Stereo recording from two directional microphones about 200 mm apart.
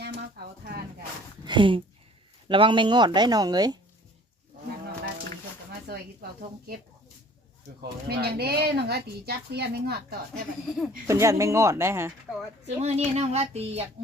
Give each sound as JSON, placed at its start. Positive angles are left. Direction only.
{"t": 0.0, "sound": "a sound", "side_deg": -55}
{"t": 1.5, "sound": "speech", "side_deg": -25}
{"t": 7.8, "sound": "speech", "side_deg": -55}
{"t": 10.8, "sound": "speech", "side_deg": -10}
{"t": 12.8, "sound": "speech", "side_deg": -30}